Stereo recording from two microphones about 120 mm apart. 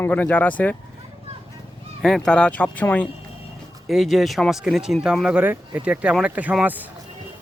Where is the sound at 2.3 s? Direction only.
10° left (ahead or behind).